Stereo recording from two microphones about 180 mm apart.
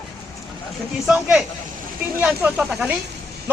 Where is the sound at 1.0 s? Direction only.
5° right (ahead or behind).